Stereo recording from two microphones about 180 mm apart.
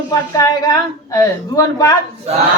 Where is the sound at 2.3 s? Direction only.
35° right (ahead or behind).